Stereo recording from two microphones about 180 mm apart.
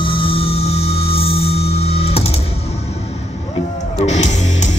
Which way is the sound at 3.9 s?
40° left (ahead or behind).